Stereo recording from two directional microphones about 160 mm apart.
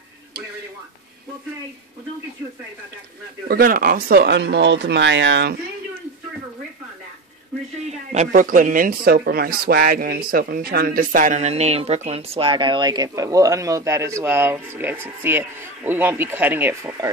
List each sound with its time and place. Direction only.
3.4 s speech: 65° right (ahead or behind); by 5.6 s 90° right
7.8 s a woman's voice: 45° right (ahead or behind)
8.3 s speech: 55° right (ahead or behind); by 16.9 s 10° right (ahead or behind)